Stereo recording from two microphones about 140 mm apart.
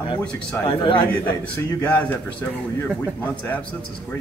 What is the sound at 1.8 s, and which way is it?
A man's voice, 10° left (ahead or behind).